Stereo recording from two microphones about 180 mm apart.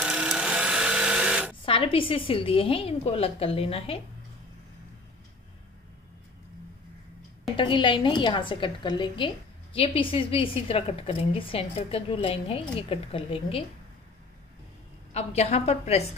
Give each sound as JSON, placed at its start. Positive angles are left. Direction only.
{"t": 0.0, "sound": "a sound", "side_deg": -5}
{"t": 1.7, "sound": "a woman's voice", "side_deg": 30}
{"t": 7.5, "sound": "a woman's voice", "side_deg": 25}
{"t": 15.1, "sound": "a woman's voice", "side_deg": 35}